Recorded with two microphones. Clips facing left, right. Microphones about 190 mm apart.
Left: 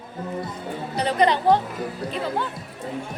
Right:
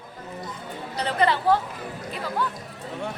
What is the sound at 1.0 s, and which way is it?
Speech, 15° left (ahead or behind).